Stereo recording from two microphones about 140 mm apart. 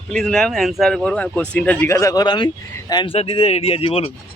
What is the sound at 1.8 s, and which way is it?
A man's voice, 20° left (ahead or behind).